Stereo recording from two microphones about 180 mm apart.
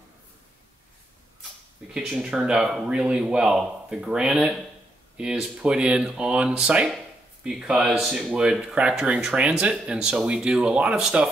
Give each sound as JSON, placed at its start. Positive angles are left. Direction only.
{"t": 2.0, "sound": "speech", "side_deg": -5}